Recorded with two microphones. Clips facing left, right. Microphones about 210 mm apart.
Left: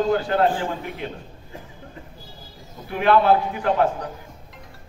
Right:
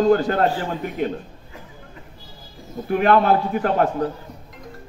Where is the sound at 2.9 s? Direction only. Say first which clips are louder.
Right 1 dB; 45° right (ahead or behind).